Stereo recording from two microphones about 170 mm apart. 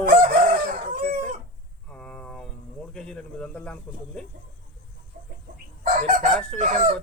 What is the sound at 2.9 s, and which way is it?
Speech, 5° left (ahead or behind).